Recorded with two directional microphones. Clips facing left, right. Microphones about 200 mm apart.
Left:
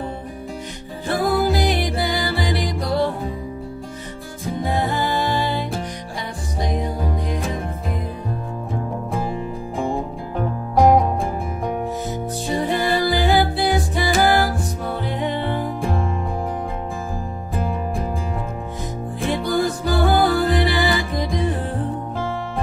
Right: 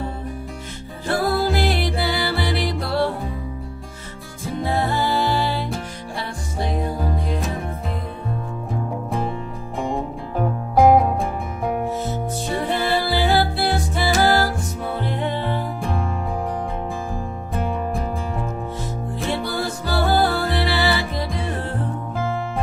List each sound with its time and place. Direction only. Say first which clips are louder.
1.1 s music: left 1 dB; 15° left (ahead or behind)
4.6 s music: right 1 dB; 20° left (ahead or behind)
6.6 s music: even; 15° left (ahead or behind)
9.8 s music: even; centre (ahead or behind)
12.1 s music: left 1 dB; 15° left (ahead or behind)
19.3 s music: left 7 dB; 15° left (ahead or behind)